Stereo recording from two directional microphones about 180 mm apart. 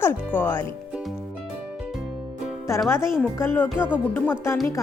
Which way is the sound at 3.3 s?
10° left (ahead or behind).